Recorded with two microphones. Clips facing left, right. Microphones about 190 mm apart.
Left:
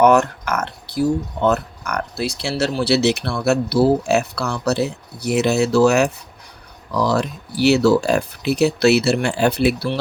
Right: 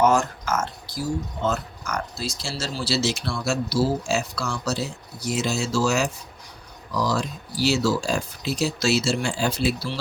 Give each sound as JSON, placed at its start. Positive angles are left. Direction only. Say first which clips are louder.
{"t": 0.0, "sound": "speech", "louder": "left 6 dB", "side_deg": 65}